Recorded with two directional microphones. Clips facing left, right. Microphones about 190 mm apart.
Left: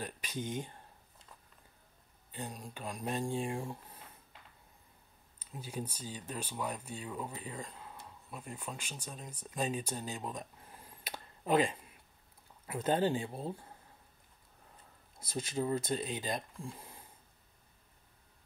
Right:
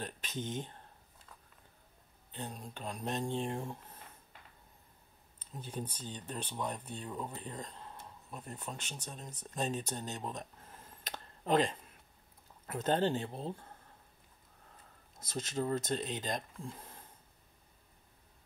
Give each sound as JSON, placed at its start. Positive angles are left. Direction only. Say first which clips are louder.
{"t": 0.0, "sound": "speech", "louder": "left 1 dB", "side_deg": 10}
{"t": 2.3, "sound": "speech", "louder": "even", "side_deg": 10}
{"t": 5.4, "sound": "speech", "louder": "left 1 dB", "side_deg": 10}
{"t": 15.1, "sound": "speech", "louder": "left 1 dB", "side_deg": 10}